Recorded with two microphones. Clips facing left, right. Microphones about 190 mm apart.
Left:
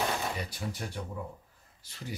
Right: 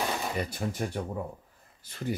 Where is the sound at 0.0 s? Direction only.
5° right (ahead or behind).